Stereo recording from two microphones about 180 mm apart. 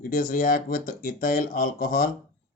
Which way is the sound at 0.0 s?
50° left (ahead or behind).